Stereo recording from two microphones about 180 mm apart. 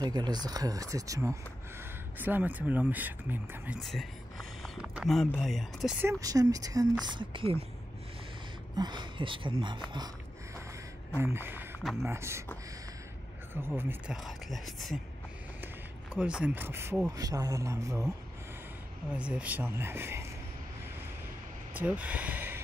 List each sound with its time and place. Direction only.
0.0 s speech: 25° right (ahead or behind)
3.8 s a sound: centre (ahead or behind)
4.8 s speech: centre (ahead or behind)
6.0 s speech: 20° right (ahead or behind)
8.7 s speech: 25° right (ahead or behind)
11.1 s speech: 10° right (ahead or behind)
11.8 s speech: centre (ahead or behind)
12.1 s speech: 15° right (ahead or behind)
13.5 s speech: 10° right (ahead or behind)
17.2 s speech: 20° right (ahead or behind)
19.1 s speech: 5° right (ahead or behind)
21.7 s speech: 5° right (ahead or behind)